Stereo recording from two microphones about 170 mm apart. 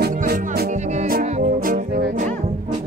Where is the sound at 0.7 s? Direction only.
45° right (ahead or behind).